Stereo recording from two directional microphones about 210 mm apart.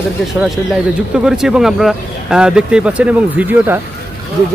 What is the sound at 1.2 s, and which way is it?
Speech, 5° right (ahead or behind).